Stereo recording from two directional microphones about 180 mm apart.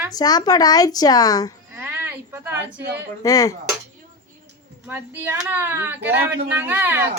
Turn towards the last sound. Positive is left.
turn(degrees=-10)  # may be behind; listen again after turning